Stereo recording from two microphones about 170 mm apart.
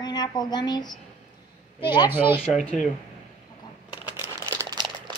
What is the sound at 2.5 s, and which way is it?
Speech, 5° left (ahead or behind).